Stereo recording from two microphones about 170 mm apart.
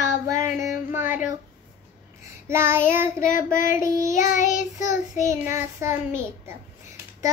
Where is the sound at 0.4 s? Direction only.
15° right (ahead or behind).